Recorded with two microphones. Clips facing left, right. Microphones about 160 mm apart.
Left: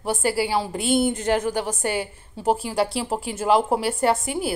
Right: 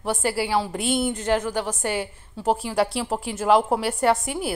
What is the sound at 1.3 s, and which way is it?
Speech, 40° left (ahead or behind).